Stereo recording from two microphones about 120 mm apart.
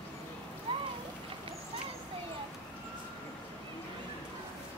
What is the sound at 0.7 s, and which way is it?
Boat, 45° right (ahead or behind).